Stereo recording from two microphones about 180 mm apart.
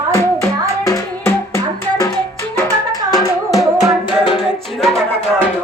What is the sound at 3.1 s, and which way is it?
Music, 20° left (ahead or behind).